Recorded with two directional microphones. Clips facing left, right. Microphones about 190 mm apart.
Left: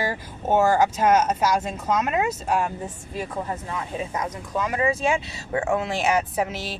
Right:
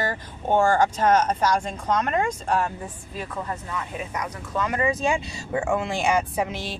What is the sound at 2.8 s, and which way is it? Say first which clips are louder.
Speech: left 3 dB; 25° left (ahead or behind).